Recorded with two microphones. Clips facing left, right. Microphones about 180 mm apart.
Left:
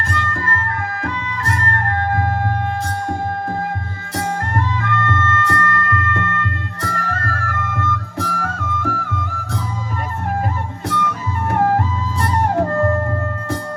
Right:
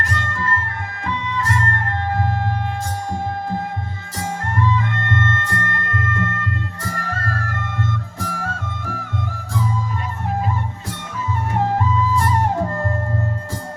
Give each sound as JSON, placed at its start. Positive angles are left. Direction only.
{"t": 0.1, "sound": "music", "side_deg": 60}
{"t": 4.4, "sound": "music", "side_deg": 55}
{"t": 7.7, "sound": "music", "side_deg": 55}
{"t": 10.9, "sound": "music", "side_deg": 65}